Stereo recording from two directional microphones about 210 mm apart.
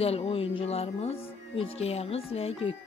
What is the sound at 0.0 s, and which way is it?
Speech, 25° left (ahead or behind).